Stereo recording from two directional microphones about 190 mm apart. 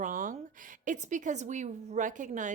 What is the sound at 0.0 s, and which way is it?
A woman's voice, 45° right (ahead or behind).